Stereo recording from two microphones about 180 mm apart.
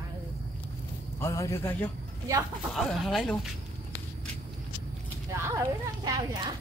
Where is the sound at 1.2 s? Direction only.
15° left (ahead or behind).